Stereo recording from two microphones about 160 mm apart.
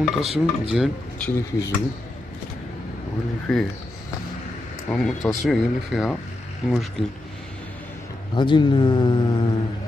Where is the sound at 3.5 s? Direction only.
Centre (ahead or behind).